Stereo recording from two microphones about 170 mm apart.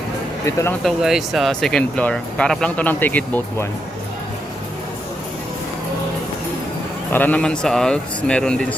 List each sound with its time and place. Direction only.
0.4 s speech: 15° left (ahead or behind)
0.9 s speech: centre (ahead or behind)
7.1 s speech: 10° left (ahead or behind)